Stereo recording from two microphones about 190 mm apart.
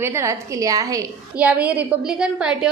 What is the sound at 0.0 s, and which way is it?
A woman's voice, 15° right (ahead or behind).